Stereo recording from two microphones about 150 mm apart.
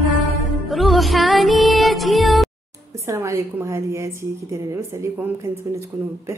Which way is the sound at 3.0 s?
20° right (ahead or behind).